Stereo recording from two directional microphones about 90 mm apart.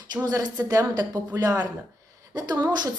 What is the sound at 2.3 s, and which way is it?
Speech, 50° right (ahead or behind).